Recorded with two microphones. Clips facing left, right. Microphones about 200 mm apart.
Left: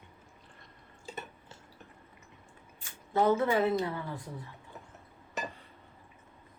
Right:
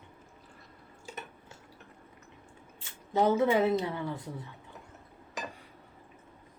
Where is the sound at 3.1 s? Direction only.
20° right (ahead or behind).